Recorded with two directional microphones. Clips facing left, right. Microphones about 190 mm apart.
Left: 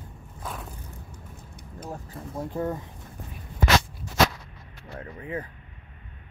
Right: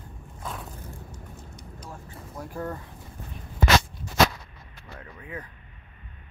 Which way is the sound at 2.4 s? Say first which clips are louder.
Left 4 dB; 20° left (ahead or behind).